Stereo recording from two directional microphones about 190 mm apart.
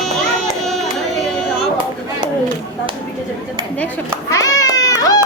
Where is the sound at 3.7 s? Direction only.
10° left (ahead or behind).